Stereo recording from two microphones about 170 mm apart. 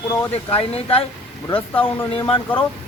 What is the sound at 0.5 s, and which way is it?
Speech, 35° left (ahead or behind).